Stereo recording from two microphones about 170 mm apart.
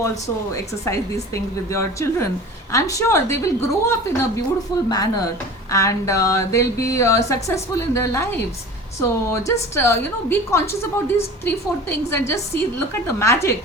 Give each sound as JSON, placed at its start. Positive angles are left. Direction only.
{"t": 0.0, "sound": "a woman's voice", "side_deg": 15}